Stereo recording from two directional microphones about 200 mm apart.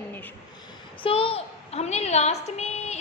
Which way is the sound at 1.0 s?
30° left (ahead or behind).